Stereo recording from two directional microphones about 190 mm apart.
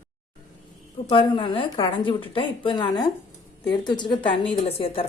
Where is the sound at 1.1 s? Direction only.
25° left (ahead or behind).